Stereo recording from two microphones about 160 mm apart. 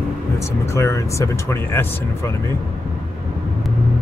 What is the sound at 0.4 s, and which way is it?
Speech, 20° left (ahead or behind).